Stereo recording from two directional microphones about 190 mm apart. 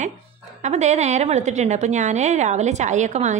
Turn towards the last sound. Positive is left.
turn(degrees=-40)  # may be behind; listen again after turning